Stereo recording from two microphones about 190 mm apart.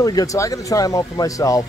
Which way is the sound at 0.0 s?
20° left (ahead or behind).